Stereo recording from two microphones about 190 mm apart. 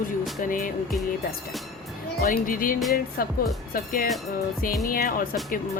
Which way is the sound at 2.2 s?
50° left (ahead or behind).